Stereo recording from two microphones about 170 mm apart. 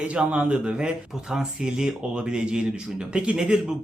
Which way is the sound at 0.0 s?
5° right (ahead or behind).